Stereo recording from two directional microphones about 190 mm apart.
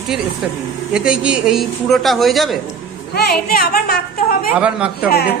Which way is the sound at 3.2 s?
55° left (ahead or behind).